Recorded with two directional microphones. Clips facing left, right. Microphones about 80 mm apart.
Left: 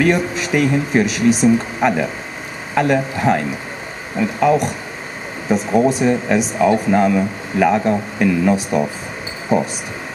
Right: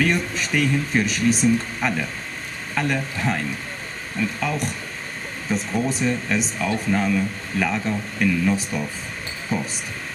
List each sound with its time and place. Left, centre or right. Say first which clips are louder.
0.0 s speech: left 6 dB; centre
5.8 s speech: left 9 dB; centre
7.7 s speech: left 9 dB; left
8.2 s speech: left 4 dB; centre
8.6 s speech: left 9 dB; left